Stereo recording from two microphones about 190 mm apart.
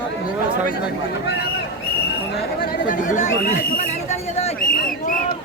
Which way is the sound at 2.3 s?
55° left (ahead or behind).